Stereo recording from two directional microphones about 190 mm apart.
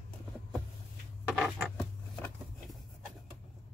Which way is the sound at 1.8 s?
10° left (ahead or behind).